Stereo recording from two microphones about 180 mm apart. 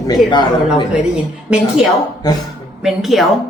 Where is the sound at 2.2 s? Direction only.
20° left (ahead or behind).